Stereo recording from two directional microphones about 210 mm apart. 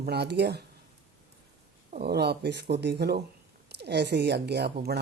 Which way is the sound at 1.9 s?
45° right (ahead or behind).